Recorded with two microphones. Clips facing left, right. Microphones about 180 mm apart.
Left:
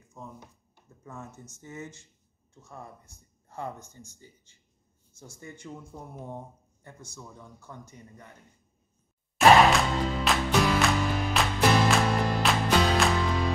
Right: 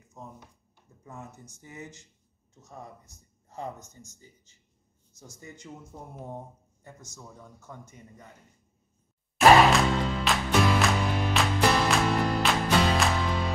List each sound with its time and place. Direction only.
1.0 s speech: 15° right (ahead or behind)
5.4 s speech: 20° right (ahead or behind)
9.7 s music: centre (ahead or behind)